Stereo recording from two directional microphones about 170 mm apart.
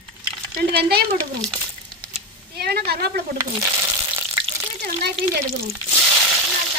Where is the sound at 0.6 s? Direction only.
70° right (ahead or behind).